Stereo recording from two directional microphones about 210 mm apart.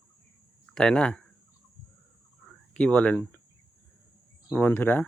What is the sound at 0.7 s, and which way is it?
Speech, 5° left (ahead or behind).